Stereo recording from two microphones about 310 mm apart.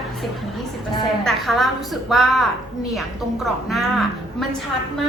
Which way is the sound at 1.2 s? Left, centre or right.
Centre.